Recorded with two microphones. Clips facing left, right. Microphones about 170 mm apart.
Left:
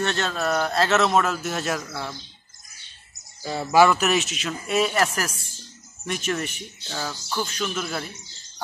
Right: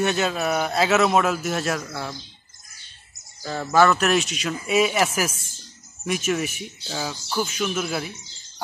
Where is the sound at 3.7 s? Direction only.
10° left (ahead or behind).